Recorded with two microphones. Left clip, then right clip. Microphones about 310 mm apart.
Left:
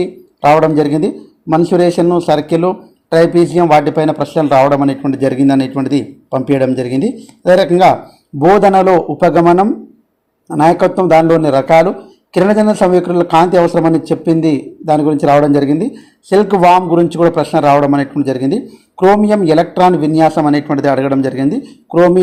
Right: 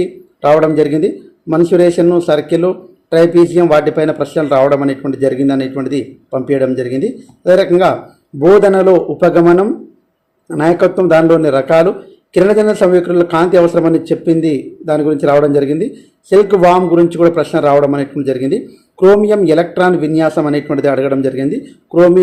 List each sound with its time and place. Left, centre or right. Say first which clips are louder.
0.0 s a man's voice: left 2 dB; centre
20.5 s speech: left 2 dB; centre
20.7 s a man's voice: even; centre